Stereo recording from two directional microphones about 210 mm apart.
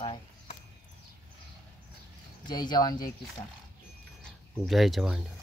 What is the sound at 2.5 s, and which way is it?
Speech, 20° left (ahead or behind).